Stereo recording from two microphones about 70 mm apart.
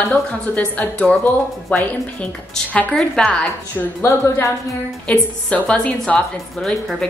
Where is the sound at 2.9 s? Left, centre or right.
Centre.